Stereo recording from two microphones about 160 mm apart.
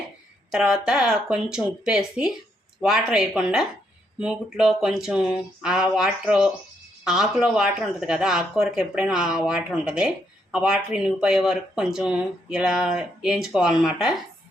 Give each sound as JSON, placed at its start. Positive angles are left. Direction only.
{"t": 0.5, "sound": "speech", "side_deg": -5}